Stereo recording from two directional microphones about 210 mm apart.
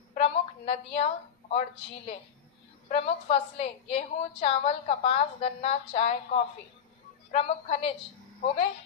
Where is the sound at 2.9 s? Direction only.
30° left (ahead or behind).